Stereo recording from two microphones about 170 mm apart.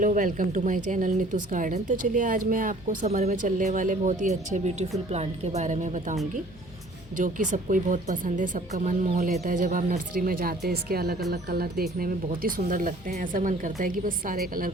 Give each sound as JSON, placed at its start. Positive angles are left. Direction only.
{"t": 0.0, "sound": "a woman's voice", "side_deg": -50}
{"t": 7.2, "sound": "a woman's voice", "side_deg": -50}
{"t": 10.2, "sound": "speech", "side_deg": -60}